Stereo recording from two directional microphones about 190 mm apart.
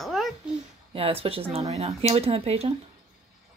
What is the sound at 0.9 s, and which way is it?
A woman's voice, 30° right (ahead or behind).